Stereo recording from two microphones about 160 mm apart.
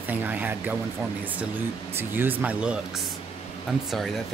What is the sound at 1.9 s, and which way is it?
Speech, 10° right (ahead or behind).